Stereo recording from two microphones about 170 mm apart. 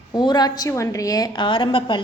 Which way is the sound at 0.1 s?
25° left (ahead or behind).